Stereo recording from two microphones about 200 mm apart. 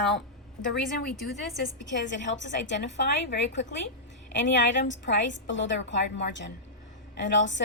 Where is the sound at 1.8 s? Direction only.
65° left (ahead or behind).